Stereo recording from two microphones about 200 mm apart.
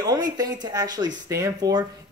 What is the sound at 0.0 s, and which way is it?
Speech, 20° right (ahead or behind).